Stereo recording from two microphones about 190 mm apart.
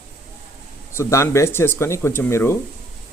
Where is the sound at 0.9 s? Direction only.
15° left (ahead or behind).